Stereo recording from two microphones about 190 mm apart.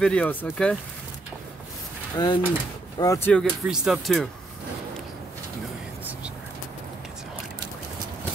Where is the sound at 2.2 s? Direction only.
20° left (ahead or behind); by 4.2 s centre (ahead or behind).